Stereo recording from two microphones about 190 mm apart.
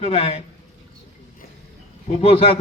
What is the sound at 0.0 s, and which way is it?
Speech, 30° left (ahead or behind).